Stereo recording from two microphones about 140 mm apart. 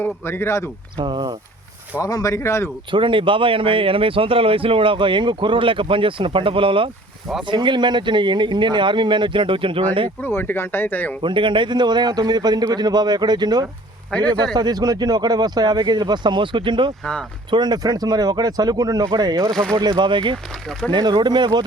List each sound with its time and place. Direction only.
0.0 s speech: 15° left (ahead or behind)
0.9 s speech: 35° right (ahead or behind)
2.0 s speech: 25° left (ahead or behind)
2.9 s speech: 35° right (ahead or behind)
10.2 s speech: 15° left (ahead or behind)
11.2 s a man's voice: 35° right (ahead or behind)
17.0 s speech: 5° left (ahead or behind)
17.5 s a man's voice: 30° right (ahead or behind)
20.3 s speech: 5° left (ahead or behind)
20.9 s speech: 30° right (ahead or behind)